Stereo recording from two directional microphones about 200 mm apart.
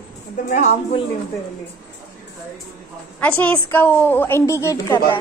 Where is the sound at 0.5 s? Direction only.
35° left (ahead or behind).